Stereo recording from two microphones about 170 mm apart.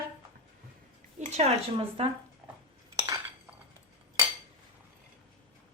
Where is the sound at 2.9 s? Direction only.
20° right (ahead or behind).